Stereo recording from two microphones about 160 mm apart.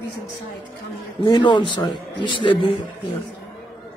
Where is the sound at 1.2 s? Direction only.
30° left (ahead or behind).